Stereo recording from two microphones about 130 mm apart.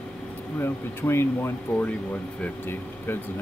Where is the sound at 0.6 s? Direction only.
20° left (ahead or behind).